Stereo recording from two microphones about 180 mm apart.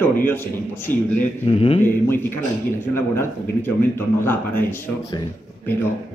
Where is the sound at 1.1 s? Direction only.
35° left (ahead or behind).